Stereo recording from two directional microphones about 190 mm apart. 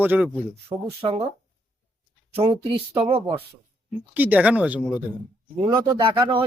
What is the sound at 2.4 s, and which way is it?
Speech, 15° right (ahead or behind).